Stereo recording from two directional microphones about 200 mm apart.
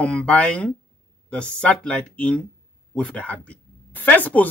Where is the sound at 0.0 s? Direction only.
5° left (ahead or behind).